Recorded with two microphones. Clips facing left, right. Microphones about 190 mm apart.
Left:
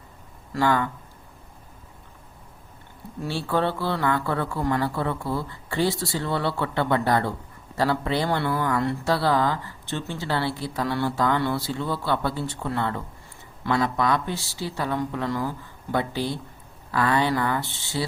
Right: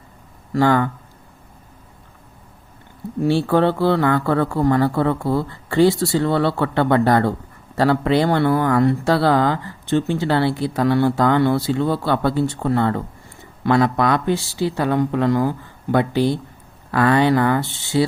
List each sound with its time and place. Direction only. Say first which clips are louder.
0.5 s speech: right 6 dB; 50° right (ahead or behind)
3.4 s speech: right 4 dB; 50° right (ahead or behind)